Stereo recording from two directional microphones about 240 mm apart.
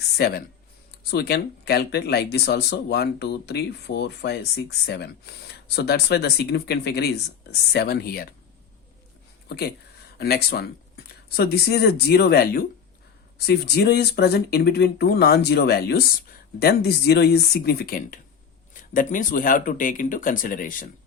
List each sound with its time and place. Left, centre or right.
0.2 s speech: left
9.5 s speech: left